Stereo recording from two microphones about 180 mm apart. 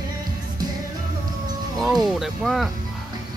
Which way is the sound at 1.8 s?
Centre (ahead or behind).